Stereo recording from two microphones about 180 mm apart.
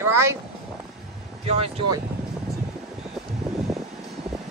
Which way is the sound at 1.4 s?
35° right (ahead or behind).